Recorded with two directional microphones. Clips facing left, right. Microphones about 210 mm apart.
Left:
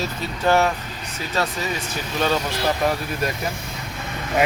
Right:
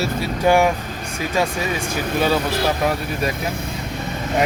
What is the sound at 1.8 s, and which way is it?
Speech, 50° right (ahead or behind).